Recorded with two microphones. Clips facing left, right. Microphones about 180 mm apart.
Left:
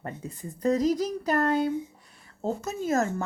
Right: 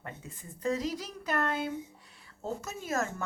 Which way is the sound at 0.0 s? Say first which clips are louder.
Left 8 dB; 40° left (ahead or behind).